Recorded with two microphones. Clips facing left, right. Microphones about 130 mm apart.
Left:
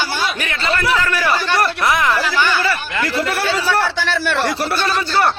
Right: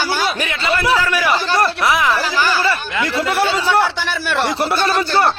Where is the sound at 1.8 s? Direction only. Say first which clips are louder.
Right 1 dB; centre (ahead or behind).